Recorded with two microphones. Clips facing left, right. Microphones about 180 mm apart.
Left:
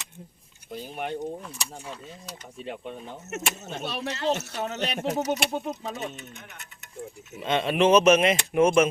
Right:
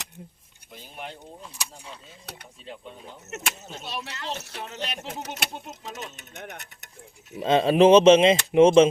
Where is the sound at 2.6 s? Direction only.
60° left (ahead or behind).